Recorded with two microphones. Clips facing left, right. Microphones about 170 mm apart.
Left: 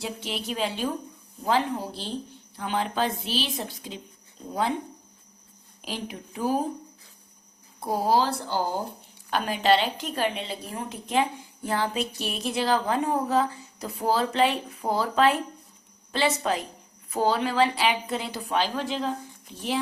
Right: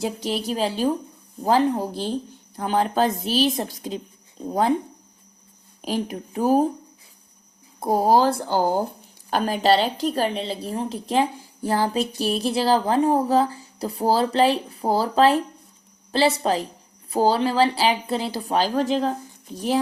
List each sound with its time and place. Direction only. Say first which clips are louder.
0.0 s a woman's voice: right 7 dB; 40° right (ahead or behind)
5.8 s a woman's voice: right 8 dB; 45° right (ahead or behind)
7.8 s a woman's voice: right 5 dB; 45° right (ahead or behind)